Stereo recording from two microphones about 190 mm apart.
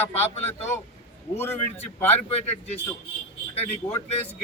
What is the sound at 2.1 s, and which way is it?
A man's voice, 35° left (ahead or behind).